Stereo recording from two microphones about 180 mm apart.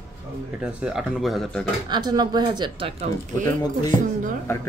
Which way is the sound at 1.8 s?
25° right (ahead or behind).